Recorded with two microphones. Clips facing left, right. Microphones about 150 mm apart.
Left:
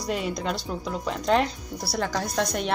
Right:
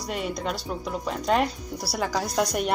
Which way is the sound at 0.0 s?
Centre (ahead or behind).